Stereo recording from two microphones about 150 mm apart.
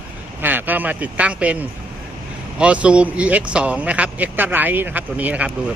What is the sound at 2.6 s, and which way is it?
Speech, 10° right (ahead or behind).